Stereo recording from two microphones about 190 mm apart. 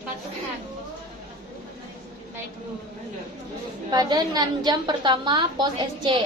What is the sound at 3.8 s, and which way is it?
A woman's voice, 20° right (ahead or behind).